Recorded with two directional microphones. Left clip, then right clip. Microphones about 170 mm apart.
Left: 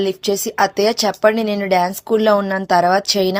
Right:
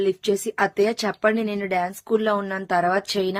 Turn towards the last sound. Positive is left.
turn(degrees=40)  # may be behind; listen again after turning